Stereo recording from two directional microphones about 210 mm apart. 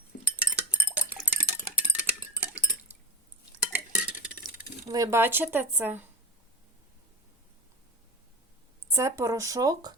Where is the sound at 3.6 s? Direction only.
5° right (ahead or behind).